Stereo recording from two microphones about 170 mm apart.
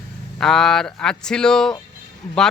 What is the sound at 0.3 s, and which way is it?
Speech, centre (ahead or behind).